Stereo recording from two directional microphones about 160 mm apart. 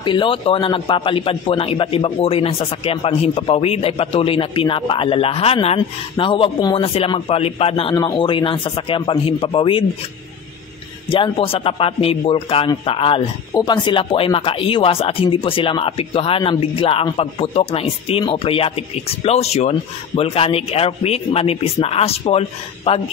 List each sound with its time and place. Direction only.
0.0 s a man's voice: 30° left (ahead or behind)
11.1 s a man's voice: 30° left (ahead or behind)